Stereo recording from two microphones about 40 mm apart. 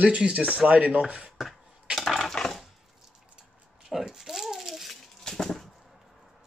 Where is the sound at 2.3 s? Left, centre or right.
Centre.